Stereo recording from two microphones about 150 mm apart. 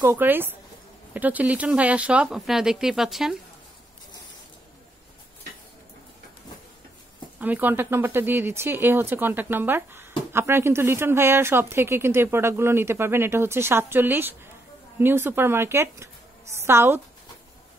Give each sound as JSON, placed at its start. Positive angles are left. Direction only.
{"t": 0.0, "sound": "speech", "side_deg": -15}
{"t": 7.3, "sound": "speech", "side_deg": -10}